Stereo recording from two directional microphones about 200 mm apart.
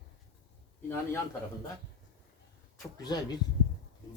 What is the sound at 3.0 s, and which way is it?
Speech, 20° left (ahead or behind).